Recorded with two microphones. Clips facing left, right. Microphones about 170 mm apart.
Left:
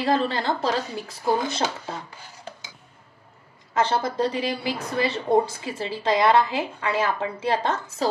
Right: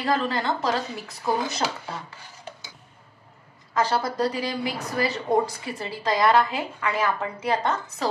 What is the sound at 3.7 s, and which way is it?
A woman's voice, 25° left (ahead or behind).